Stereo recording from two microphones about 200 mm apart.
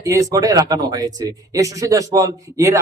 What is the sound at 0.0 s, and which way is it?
Speech, 15° right (ahead or behind).